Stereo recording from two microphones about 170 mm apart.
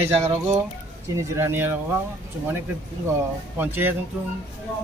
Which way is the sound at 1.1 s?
15° right (ahead or behind).